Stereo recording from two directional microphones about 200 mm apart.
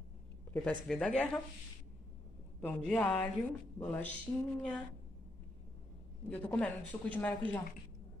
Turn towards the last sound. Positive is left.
turn(degrees=5)  # may be behind; listen again after turning